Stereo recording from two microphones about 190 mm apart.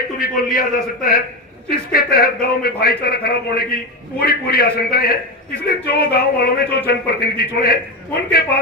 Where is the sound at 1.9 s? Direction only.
50° left (ahead or behind).